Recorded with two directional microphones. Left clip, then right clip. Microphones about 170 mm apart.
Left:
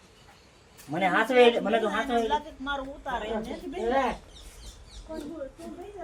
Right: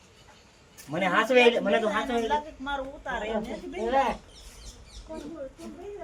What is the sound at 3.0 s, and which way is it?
Speech, 5° right (ahead or behind).